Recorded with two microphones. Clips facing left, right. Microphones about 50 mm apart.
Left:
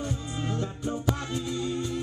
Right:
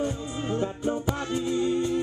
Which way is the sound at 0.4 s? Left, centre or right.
Right.